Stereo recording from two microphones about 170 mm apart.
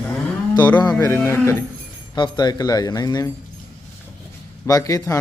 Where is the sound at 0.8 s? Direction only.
20° left (ahead or behind).